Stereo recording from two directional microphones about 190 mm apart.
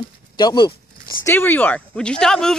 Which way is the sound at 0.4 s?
20° left (ahead or behind).